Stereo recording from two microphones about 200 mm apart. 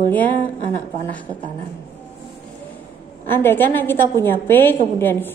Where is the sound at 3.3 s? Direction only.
10° left (ahead or behind).